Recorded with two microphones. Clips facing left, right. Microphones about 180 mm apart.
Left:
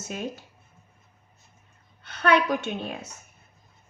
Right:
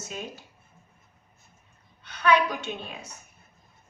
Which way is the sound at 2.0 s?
50° left (ahead or behind).